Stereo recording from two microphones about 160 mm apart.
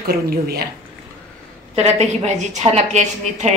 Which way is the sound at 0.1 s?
75° right (ahead or behind).